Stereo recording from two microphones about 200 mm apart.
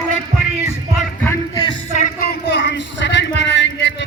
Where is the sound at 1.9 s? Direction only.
40° left (ahead or behind).